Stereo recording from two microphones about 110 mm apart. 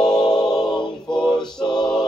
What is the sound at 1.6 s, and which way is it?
Music, 45° left (ahead or behind).